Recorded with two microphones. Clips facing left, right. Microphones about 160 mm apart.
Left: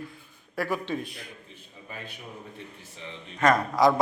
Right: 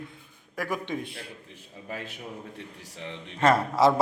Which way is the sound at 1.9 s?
80° right.